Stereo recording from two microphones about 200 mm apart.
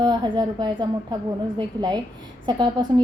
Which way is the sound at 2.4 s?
20° right (ahead or behind).